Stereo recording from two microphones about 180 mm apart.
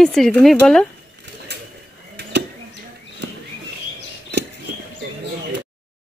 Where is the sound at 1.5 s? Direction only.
65° right (ahead or behind).